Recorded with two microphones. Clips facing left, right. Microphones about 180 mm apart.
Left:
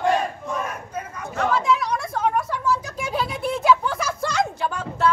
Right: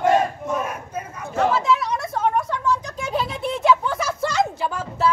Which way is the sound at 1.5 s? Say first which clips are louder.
Right 1 dB; centre (ahead or behind).